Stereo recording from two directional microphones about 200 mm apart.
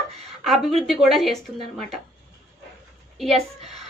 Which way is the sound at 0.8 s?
Centre (ahead or behind).